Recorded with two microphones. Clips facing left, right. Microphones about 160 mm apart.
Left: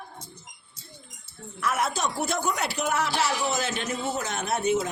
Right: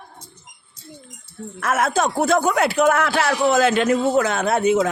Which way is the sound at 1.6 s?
90° right.